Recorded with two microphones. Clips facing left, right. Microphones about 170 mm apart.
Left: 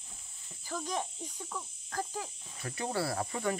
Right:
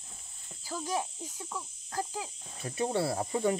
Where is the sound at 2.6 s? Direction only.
20° right (ahead or behind).